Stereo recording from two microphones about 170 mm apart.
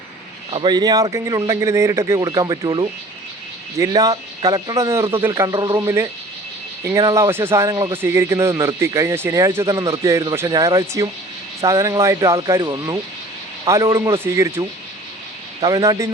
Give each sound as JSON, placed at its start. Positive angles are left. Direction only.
{"t": 0.5, "sound": "a man's voice", "side_deg": -25}
{"t": 15.6, "sound": "a man's voice", "side_deg": -20}